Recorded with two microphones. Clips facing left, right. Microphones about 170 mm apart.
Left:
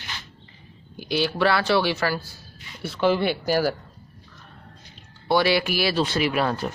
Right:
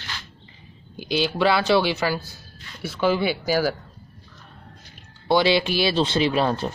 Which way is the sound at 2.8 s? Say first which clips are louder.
Even; 5° right (ahead or behind).